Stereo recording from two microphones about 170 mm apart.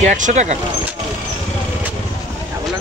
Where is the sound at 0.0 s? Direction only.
45° right (ahead or behind).